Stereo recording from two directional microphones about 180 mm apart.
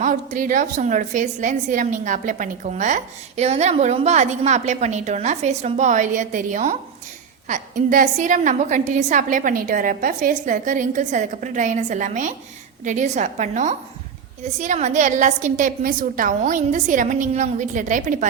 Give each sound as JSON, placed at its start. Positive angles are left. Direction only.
{"t": 0.0, "sound": "a woman's voice", "side_deg": -45}